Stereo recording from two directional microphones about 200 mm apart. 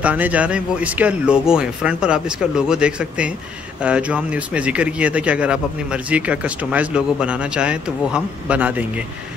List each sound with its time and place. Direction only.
0.0 s speech: 5° right (ahead or behind)